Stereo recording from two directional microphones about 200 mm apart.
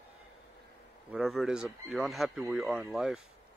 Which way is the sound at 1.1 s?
Centre (ahead or behind).